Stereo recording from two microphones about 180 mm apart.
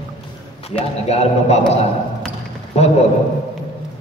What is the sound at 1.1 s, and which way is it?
Speech, 35° left (ahead or behind).